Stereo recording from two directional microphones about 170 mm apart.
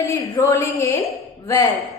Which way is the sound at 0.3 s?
20° left (ahead or behind).